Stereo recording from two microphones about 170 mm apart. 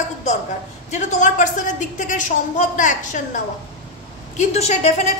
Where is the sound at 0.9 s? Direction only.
45° left (ahead or behind).